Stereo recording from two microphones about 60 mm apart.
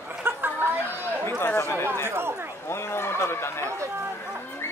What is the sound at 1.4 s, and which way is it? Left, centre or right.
Chatter, left.